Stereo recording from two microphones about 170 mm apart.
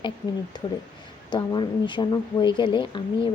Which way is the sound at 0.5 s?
25° left (ahead or behind).